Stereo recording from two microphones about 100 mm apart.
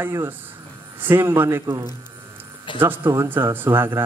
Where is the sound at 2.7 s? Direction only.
55° left (ahead or behind).